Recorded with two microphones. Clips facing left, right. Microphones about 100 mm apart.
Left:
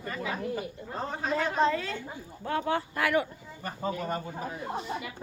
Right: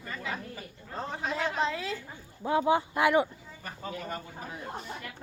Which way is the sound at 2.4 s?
15° right (ahead or behind).